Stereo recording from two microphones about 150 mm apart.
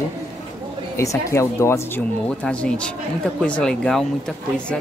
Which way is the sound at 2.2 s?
5° left (ahead or behind).